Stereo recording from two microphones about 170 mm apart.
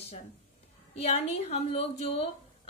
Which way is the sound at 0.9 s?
40° left (ahead or behind).